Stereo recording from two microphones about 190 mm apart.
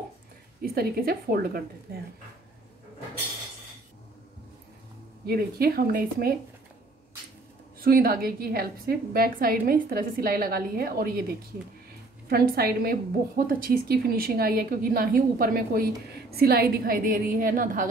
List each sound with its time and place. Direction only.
0.6 s a woman's voice: 50° right (ahead or behind)
5.2 s a woman's voice: 55° right (ahead or behind)
7.8 s a woman's voice: 50° right (ahead or behind)